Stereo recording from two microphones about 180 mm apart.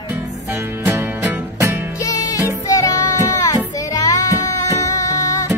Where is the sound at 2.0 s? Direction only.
20° left (ahead or behind).